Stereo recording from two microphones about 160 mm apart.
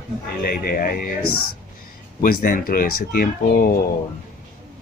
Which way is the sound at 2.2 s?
60° left (ahead or behind).